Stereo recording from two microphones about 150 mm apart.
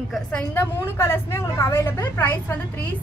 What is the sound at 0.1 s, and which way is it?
A woman's voice, 5° left (ahead or behind).